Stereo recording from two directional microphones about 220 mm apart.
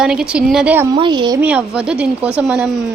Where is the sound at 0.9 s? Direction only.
20° right (ahead or behind).